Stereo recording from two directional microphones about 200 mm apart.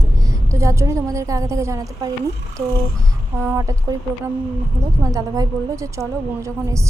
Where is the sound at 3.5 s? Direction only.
15° right (ahead or behind).